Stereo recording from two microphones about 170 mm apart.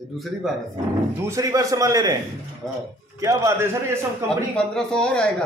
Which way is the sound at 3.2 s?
20° right (ahead or behind).